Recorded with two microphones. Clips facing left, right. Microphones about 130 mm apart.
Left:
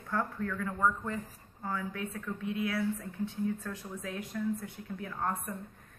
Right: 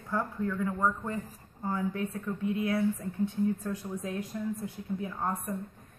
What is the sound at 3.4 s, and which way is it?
A woman's voice, 15° right (ahead or behind).